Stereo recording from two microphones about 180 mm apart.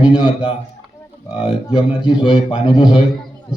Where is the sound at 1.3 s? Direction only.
30° left (ahead or behind).